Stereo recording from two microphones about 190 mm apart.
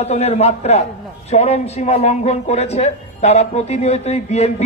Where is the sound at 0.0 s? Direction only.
35° left (ahead or behind).